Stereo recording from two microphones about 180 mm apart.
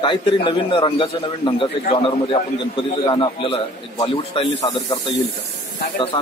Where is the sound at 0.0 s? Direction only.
25° left (ahead or behind).